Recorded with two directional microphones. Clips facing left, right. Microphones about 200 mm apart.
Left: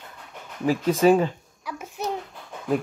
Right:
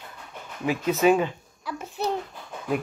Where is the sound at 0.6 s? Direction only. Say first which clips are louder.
Left 2 dB; 35° left (ahead or behind).